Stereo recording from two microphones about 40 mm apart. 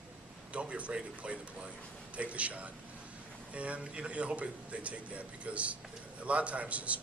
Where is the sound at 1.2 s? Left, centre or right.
Right.